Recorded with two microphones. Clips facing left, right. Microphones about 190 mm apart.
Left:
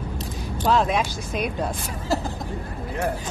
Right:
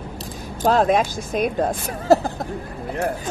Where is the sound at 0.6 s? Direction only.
45° right (ahead or behind).